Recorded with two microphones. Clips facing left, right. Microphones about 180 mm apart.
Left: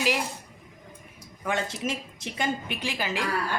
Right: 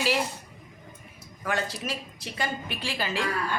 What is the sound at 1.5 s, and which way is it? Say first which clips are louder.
A woman's voice: left 1 dB; 20° left (ahead or behind).